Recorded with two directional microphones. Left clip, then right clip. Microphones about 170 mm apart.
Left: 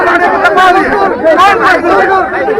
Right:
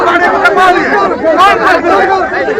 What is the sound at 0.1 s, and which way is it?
Chatter, 30° left (ahead or behind).